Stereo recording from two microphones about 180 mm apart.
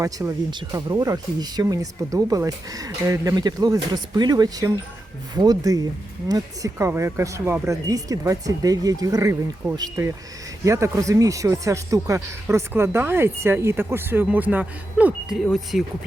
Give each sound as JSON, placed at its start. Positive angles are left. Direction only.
{"t": 0.0, "sound": "speech", "side_deg": -20}